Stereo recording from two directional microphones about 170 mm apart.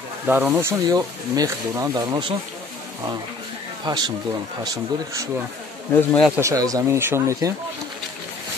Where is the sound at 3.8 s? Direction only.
25° right (ahead or behind).